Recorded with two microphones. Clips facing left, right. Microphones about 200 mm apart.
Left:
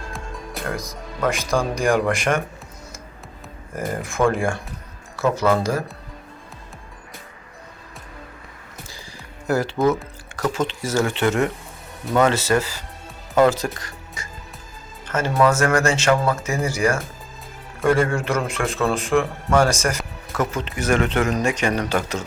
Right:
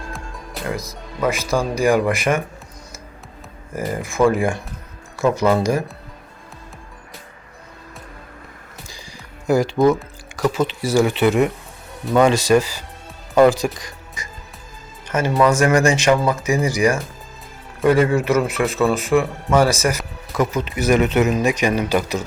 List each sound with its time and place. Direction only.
0.1 s music: centre (ahead or behind)
1.2 s a man's voice: 5° right (ahead or behind)
3.8 s a man's voice: centre (ahead or behind)
5.2 s speech: 15° right (ahead or behind)
9.5 s speech: 10° right (ahead or behind)
10.2 s drip: 10° right (ahead or behind)
10.8 s speech: 10° right (ahead or behind)
15.0 s music: 15° right (ahead or behind)
15.4 s a man's voice: 15° right (ahead or behind)